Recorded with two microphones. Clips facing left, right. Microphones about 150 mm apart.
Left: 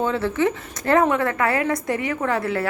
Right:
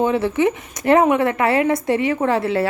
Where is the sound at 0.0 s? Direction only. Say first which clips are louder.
Right 4 dB; 20° right (ahead or behind).